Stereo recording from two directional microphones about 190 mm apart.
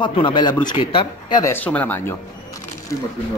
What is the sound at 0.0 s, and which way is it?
Speech, 25° left (ahead or behind).